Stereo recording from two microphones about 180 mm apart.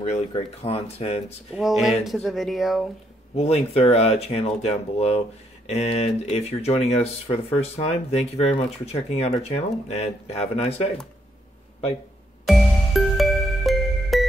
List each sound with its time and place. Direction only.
0.0 s speech: 35° left (ahead or behind)
1.5 s speech: centre (ahead or behind)
3.3 s speech: 35° left (ahead or behind)
12.4 s music: centre (ahead or behind)